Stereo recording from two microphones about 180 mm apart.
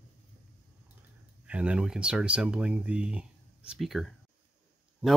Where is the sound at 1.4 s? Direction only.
5° right (ahead or behind).